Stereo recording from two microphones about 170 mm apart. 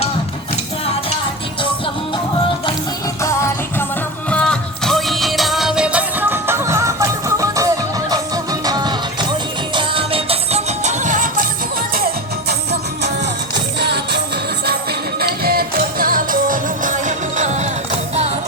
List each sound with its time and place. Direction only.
3.2 s music: 15° left (ahead or behind)
4.3 s music: 5° left (ahead or behind); by 11.4 s 50° right (ahead or behind)
11.9 s music: 60° right (ahead or behind)
13.7 s music: 75° right (ahead or behind)
15.2 s music: 65° right (ahead or behind); by 17.7 s 45° right (ahead or behind)